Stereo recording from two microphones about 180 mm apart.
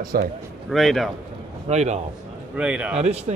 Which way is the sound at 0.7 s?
Centre (ahead or behind).